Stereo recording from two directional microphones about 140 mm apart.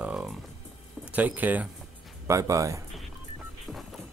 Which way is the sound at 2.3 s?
25° right (ahead or behind).